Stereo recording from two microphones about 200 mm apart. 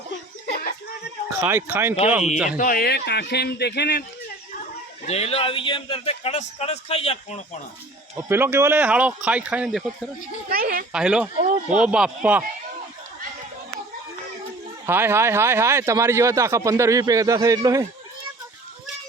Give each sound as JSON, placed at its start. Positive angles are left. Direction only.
{"t": 0.4, "sound": "chuckle", "side_deg": 55}
{"t": 1.4, "sound": "speech", "side_deg": -10}
{"t": 2.6, "sound": "speech", "side_deg": 45}
{"t": 5.0, "sound": "speech", "side_deg": 30}
{"t": 8.3, "sound": "speech", "side_deg": -10}
{"t": 10.5, "sound": "speech", "side_deg": -45}
{"t": 10.9, "sound": "speech", "side_deg": -5}
{"t": 14.8, "sound": "speech", "side_deg": -10}